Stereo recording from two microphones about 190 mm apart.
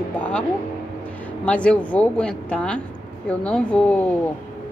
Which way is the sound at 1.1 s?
5° left (ahead or behind).